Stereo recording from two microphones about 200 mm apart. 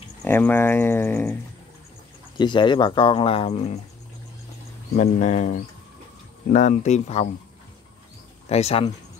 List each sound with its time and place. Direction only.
0.2 s speech: 10° left (ahead or behind)
2.3 s speech: 20° left (ahead or behind)
4.9 s speech: 35° left (ahead or behind)
8.5 s speech: 30° left (ahead or behind)